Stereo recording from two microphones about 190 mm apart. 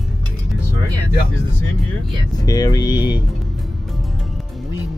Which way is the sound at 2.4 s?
20° left (ahead or behind).